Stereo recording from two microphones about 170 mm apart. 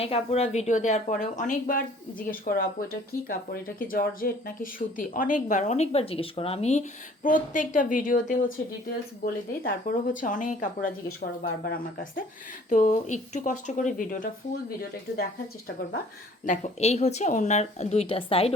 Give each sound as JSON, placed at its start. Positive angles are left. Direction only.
{"t": 0.0, "sound": "speech", "side_deg": 35}
{"t": 12.7, "sound": "speech", "side_deg": 50}
{"t": 16.5, "sound": "speech", "side_deg": 40}